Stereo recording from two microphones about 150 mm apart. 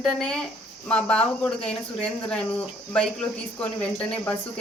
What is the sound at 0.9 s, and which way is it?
Speech, 5° left (ahead or behind).